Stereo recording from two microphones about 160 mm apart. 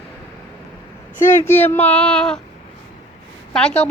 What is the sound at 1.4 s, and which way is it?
Speech, 15° left (ahead or behind).